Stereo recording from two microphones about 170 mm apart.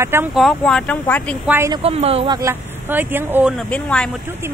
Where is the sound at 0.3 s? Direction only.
Centre (ahead or behind).